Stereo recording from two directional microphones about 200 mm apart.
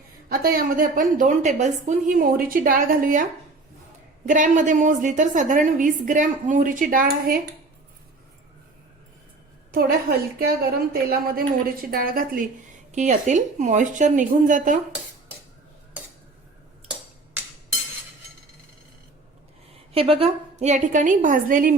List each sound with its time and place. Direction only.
0.3 s a woman's voice: 45° right (ahead or behind)
4.3 s a woman's voice: 40° right (ahead or behind)
9.7 s a woman's voice: 50° right (ahead or behind)
19.9 s a woman's voice: 25° right (ahead or behind); by 21.8 s 45° right (ahead or behind)